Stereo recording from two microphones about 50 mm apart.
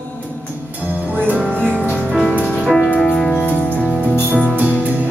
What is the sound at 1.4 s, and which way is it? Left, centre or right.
Music, left.